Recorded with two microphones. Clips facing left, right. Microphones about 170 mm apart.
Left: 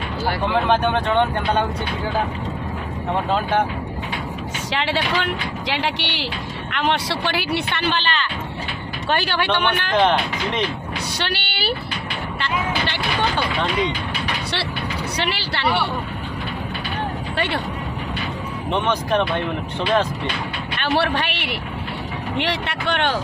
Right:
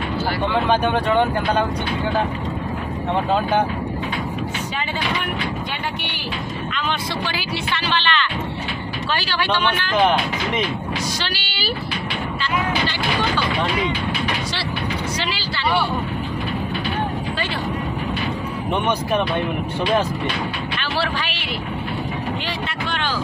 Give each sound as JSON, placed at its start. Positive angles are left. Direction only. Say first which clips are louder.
{"t": 0.5, "sound": "speech", "louder": "even", "side_deg": 0}
{"t": 4.7, "sound": "speech", "louder": "left 5 dB", "side_deg": 90}
{"t": 6.7, "sound": "speech", "louder": "left 6 dB", "side_deg": 70}
{"t": 9.1, "sound": "speech", "louder": "left 2 dB", "side_deg": 55}
{"t": 11.1, "sound": "vehicle", "louder": "left 2 dB", "side_deg": 60}
{"t": 18.7, "sound": "speech", "louder": "left 1 dB", "side_deg": -10}
{"t": 20.8, "sound": "speech", "louder": "left 6 dB", "side_deg": 60}